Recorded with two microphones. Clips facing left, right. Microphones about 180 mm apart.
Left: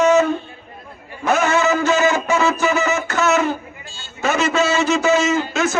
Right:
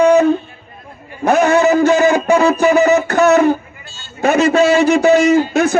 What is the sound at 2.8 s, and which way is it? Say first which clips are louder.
Music: right 9 dB; 35° right (ahead or behind).